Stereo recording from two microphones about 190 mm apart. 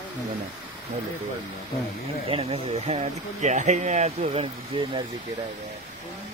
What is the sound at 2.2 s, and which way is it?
Speech, 30° right (ahead or behind).